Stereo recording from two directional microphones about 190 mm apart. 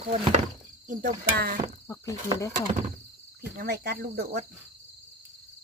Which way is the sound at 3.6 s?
55° right (ahead or behind).